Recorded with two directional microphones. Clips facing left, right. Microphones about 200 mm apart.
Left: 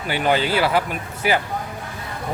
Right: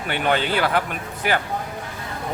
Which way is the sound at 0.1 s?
5° left (ahead or behind).